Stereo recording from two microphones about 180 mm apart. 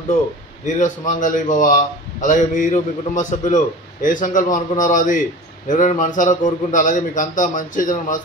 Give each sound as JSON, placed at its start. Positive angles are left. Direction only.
{"t": 0.7, "sound": "a man's voice", "side_deg": 45}